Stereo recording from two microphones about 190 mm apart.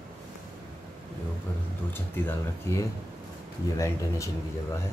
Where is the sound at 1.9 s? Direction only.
10° left (ahead or behind).